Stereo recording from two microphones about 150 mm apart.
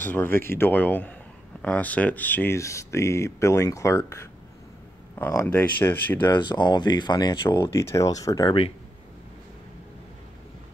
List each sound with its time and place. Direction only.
0.0 s speech: 15° left (ahead or behind)
6.3 s speech: 30° left (ahead or behind)
7.4 s speech: 15° left (ahead or behind)
8.5 s speech: 40° left (ahead or behind)